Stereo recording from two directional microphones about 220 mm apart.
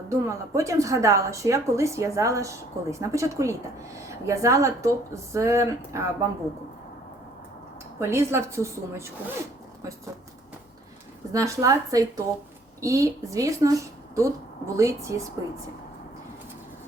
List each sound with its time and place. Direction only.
0.1 s a woman's voice: 15° right (ahead or behind)
7.9 s a woman's voice: 10° right (ahead or behind)
11.3 s a woman's voice: 15° right (ahead or behind)